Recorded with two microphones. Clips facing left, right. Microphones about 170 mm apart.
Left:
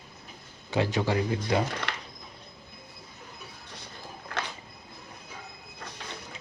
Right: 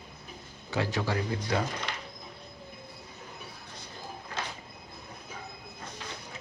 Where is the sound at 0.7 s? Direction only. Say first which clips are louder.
Left 4 dB; 20° left (ahead or behind).